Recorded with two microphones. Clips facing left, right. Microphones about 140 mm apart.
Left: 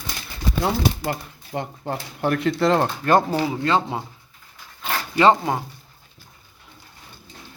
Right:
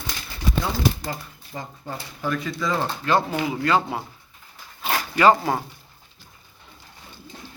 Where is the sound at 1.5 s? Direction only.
65° left (ahead or behind).